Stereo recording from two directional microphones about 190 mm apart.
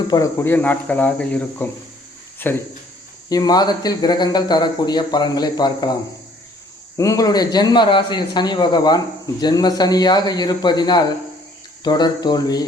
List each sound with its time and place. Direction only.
0.1 s speech: 15° left (ahead or behind)